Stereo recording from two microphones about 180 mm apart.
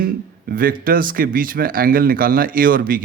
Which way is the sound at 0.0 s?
55° right (ahead or behind).